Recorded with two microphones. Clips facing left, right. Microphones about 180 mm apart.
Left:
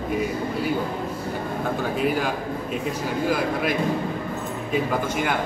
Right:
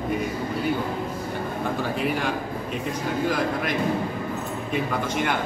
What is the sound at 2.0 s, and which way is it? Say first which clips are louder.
Speech: left 4 dB; centre (ahead or behind).